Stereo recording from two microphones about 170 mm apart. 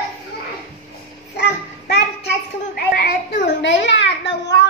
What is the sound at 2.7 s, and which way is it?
Child singing, 60° left (ahead or behind).